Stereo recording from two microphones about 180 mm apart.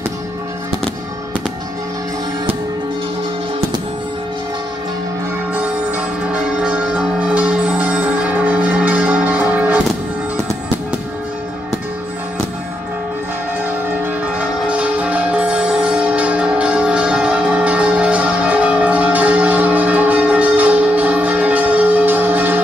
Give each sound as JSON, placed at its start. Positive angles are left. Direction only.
{"t": 6.6, "sound": "music", "side_deg": -5}
{"t": 14.7, "sound": "music", "side_deg": -5}